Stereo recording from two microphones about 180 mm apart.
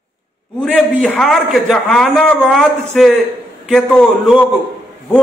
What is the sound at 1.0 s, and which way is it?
A man's voice, 5° left (ahead or behind).